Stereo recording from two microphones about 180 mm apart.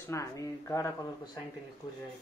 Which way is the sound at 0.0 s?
15° left (ahead or behind).